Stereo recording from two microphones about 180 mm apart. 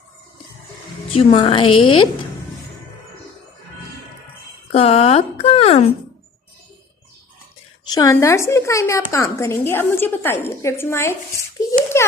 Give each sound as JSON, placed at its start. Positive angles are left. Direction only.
{"t": 1.1, "sound": "speech", "side_deg": 30}
{"t": 4.7, "sound": "speech", "side_deg": 35}
{"t": 7.9, "sound": "a woman's voice", "side_deg": 20}